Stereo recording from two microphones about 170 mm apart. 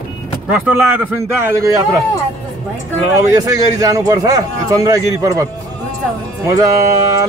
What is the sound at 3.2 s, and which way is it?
A man's voice, 20° right (ahead or behind).